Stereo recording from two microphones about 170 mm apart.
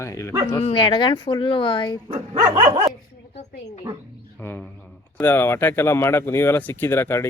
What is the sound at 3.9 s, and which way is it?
Speech, 20° right (ahead or behind).